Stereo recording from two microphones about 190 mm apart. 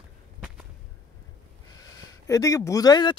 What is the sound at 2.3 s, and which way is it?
Speech, 15° left (ahead or behind).